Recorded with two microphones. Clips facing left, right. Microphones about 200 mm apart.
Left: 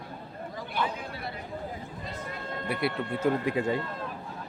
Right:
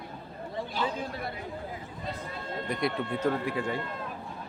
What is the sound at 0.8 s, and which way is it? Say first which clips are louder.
Speech: left 1 dB; 55° left (ahead or behind).